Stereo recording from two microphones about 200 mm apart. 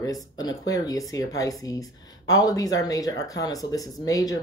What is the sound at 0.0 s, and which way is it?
Speech, 20° left (ahead or behind).